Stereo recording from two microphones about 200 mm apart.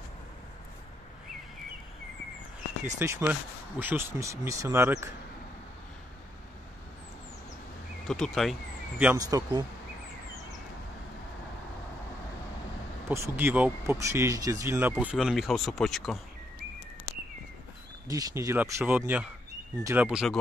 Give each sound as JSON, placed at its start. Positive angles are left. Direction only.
{"t": 2.8, "sound": "speech", "side_deg": -10}
{"t": 8.1, "sound": "speech", "side_deg": 0}
{"t": 8.9, "sound": "speech", "side_deg": -10}
{"t": 13.1, "sound": "speech", "side_deg": -10}
{"t": 18.0, "sound": "speech", "side_deg": -15}